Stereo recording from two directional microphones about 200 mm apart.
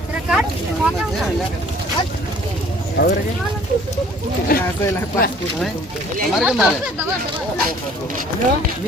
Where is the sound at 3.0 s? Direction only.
55° left (ahead or behind).